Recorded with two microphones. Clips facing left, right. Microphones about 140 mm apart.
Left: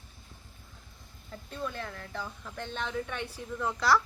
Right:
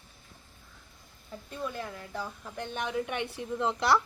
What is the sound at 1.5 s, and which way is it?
A woman's voice, 10° right (ahead or behind).